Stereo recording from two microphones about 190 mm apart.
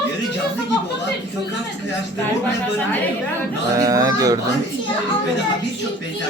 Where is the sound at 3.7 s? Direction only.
20° right (ahead or behind).